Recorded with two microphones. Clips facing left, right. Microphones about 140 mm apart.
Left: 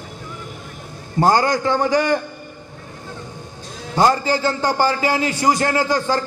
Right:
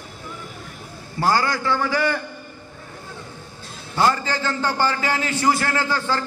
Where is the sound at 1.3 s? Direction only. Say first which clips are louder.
Left 3 dB; 20° left (ahead or behind).